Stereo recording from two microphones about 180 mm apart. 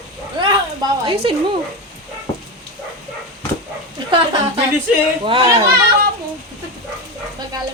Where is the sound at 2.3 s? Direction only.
25° left (ahead or behind).